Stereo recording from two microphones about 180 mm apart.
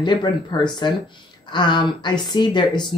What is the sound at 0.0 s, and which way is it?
A woman's voice, 25° left (ahead or behind).